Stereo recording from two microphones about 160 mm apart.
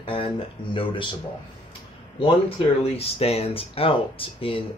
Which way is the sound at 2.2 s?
35° left (ahead or behind).